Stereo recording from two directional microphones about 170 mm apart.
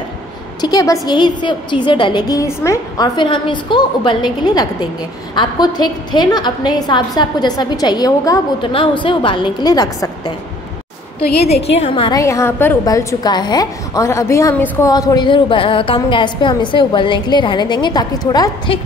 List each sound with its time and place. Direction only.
0.6 s a woman's voice: 25° left (ahead or behind)
11.1 s a woman's voice: 35° left (ahead or behind)
12.2 s a woman's voice: 15° left (ahead or behind)